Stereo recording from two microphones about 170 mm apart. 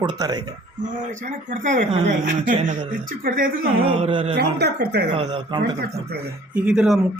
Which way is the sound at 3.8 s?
35° right (ahead or behind).